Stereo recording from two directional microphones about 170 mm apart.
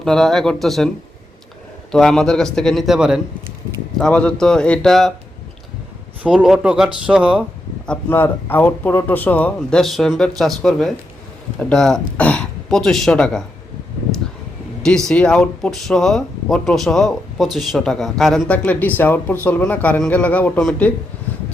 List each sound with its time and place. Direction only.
0.0 s speech: centre (ahead or behind)
1.9 s speech: 5° left (ahead or behind)
6.2 s speech: centre (ahead or behind)
7.9 s speech: 10° left (ahead or behind)
14.8 s speech: 5° left (ahead or behind)